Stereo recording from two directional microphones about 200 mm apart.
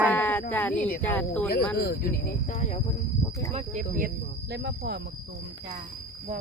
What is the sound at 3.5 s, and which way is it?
Speech, 35° right (ahead or behind).